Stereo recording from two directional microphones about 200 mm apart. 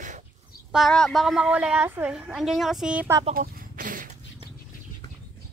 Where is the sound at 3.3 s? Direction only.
45° right (ahead or behind).